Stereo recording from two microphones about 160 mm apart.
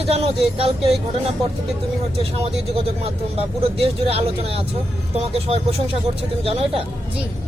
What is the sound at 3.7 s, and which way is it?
Speech, 35° right (ahead or behind).